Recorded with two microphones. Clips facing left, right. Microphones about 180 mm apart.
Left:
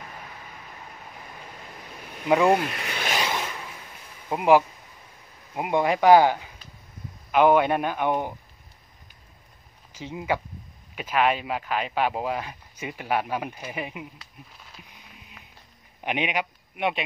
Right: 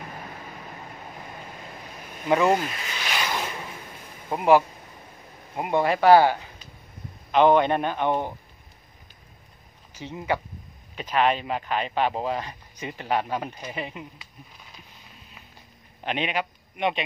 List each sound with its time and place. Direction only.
2.2 s speech: 15° left (ahead or behind)
2.5 s speech: 60° left (ahead or behind)
4.3 s speech: 15° left (ahead or behind)
9.9 s speech: 10° left (ahead or behind)
14.9 s a sound: 15° left (ahead or behind)
16.0 s a man's voice: 10° left (ahead or behind)